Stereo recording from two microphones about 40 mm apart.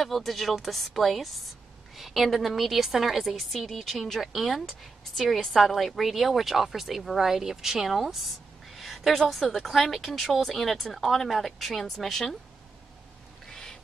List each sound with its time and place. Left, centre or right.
0.0 s a woman's voice: centre
8.7 s a sound: centre
9.3 s a woman's voice: centre
13.5 s bird: centre